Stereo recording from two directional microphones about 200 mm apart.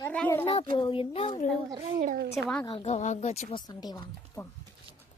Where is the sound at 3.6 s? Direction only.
20° left (ahead or behind).